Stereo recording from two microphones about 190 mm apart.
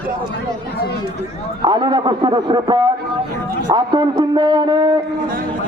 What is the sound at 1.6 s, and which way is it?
A man's voice, 20° right (ahead or behind).